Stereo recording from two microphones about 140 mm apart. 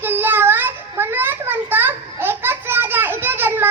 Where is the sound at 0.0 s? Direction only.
15° right (ahead or behind).